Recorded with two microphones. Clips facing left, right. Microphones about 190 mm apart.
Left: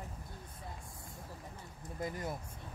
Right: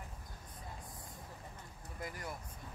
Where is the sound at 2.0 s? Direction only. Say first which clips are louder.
Left 5 dB; 25° left (ahead or behind).